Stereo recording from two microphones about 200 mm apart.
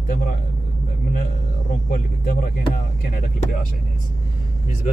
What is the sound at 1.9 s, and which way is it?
Speech, 45° left (ahead or behind).